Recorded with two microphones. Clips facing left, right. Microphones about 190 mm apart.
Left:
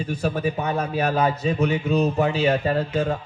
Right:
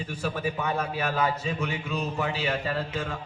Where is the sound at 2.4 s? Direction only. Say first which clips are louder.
Left 8 dB; 45° left (ahead or behind).